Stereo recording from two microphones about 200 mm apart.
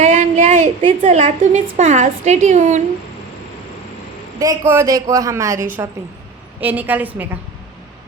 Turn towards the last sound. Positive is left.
turn(degrees=-10)  # may be behind; listen again after turning